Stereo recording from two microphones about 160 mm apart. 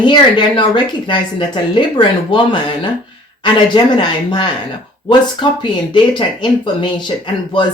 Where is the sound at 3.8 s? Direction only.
30° left (ahead or behind).